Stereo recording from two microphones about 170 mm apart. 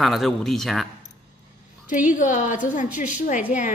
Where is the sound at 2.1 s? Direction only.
45° left (ahead or behind).